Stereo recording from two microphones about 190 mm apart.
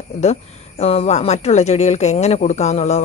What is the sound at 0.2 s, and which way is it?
Speech, 35° left (ahead or behind).